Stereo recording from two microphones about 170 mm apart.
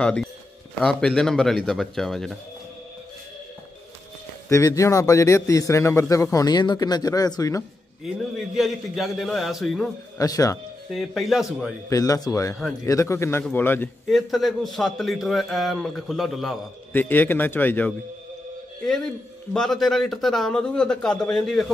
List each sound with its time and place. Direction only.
0.0 s a man's voice: 5° left (ahead or behind)
4.5 s a man's voice: 20° left (ahead or behind)
8.5 s a man's voice: centre (ahead or behind)
10.1 s a man's voice: 20° left (ahead or behind)
10.9 s a man's voice: centre (ahead or behind)
11.9 s a man's voice: 20° left (ahead or behind)
14.1 s a man's voice: centre (ahead or behind)
19.5 s a man's voice: centre (ahead or behind)